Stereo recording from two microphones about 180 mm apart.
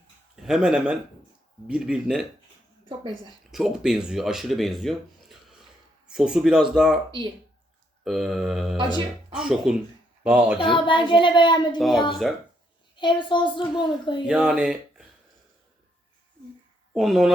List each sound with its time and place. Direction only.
0.4 s speech: 5° right (ahead or behind)
3.5 s speech: centre (ahead or behind)
8.0 s a child's voice: centre (ahead or behind)
10.6 s a woman's voice: 25° left (ahead or behind)
11.8 s speech: centre (ahead or behind)
13.0 s a woman's voice: 25° left (ahead or behind)
14.3 s speech: 5° right (ahead or behind)
16.9 s speech: centre (ahead or behind)